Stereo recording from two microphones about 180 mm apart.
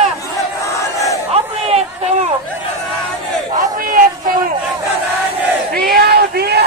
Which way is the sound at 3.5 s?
50° right (ahead or behind).